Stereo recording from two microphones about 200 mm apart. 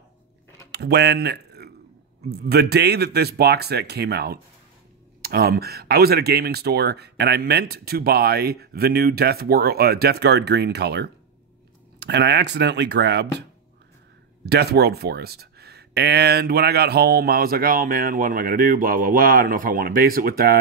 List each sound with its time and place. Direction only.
0.7 s speech: 55° right (ahead or behind)